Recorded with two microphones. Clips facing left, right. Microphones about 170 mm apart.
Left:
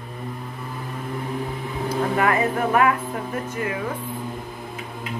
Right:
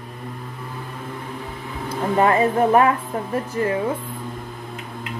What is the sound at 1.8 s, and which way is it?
Speech, 30° right (ahead or behind).